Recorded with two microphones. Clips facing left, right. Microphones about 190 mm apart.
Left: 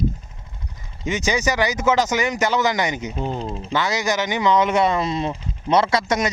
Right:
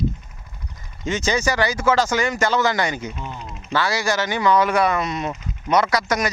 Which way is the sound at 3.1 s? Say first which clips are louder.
Left 8 dB; 30° left (ahead or behind).